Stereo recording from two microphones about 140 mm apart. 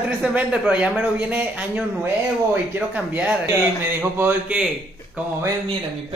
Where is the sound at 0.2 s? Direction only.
5° right (ahead or behind).